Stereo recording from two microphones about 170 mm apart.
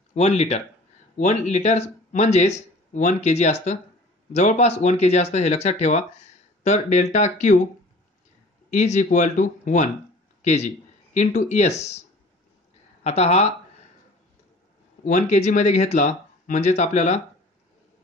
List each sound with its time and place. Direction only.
0.1 s speech: 40° left (ahead or behind)
8.6 s a man's voice: 45° left (ahead or behind)
13.0 s speech: 40° left (ahead or behind)
15.0 s speech: 45° left (ahead or behind)